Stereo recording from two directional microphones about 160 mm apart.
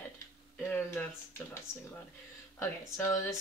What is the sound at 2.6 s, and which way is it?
Speech, 15° left (ahead or behind).